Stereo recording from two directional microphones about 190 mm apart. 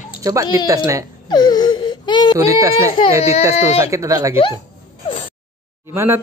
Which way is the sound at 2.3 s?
15° right (ahead or behind).